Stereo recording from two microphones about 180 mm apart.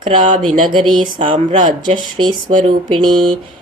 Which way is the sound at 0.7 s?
30° right (ahead or behind).